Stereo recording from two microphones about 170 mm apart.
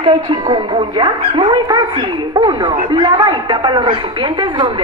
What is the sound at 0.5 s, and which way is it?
A man's voice, 30° right (ahead or behind).